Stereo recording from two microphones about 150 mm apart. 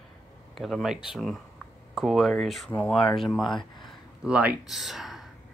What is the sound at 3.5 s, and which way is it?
Speech, 30° left (ahead or behind).